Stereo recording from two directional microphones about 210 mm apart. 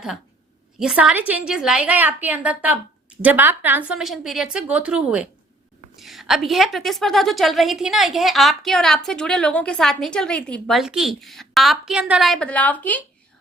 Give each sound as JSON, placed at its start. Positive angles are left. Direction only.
{"t": 0.8, "sound": "a woman's voice", "side_deg": -5}